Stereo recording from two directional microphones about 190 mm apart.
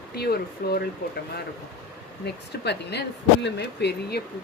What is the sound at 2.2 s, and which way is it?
Speech, 60° left (ahead or behind).